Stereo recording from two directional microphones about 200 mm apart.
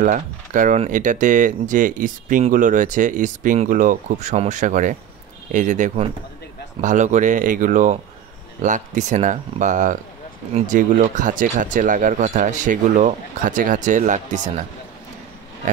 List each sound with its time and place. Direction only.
0.0 s speech: 40° right (ahead or behind)
15.6 s speech: 40° right (ahead or behind)